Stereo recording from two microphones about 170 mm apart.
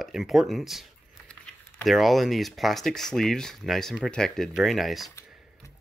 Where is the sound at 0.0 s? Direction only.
Centre (ahead or behind).